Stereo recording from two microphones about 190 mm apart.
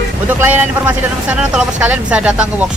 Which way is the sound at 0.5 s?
5° right (ahead or behind).